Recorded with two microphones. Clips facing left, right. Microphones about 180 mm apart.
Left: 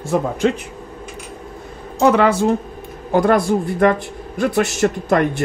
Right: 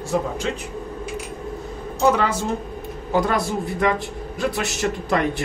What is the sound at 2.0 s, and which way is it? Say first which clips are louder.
Speech: left 6 dB; 65° left (ahead or behind).